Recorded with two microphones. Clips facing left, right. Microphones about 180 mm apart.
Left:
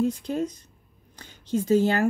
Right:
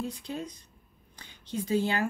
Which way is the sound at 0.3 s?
45° left (ahead or behind).